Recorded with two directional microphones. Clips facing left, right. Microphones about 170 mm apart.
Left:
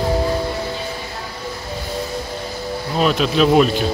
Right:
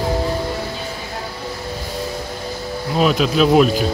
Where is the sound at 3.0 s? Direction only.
Centre (ahead or behind).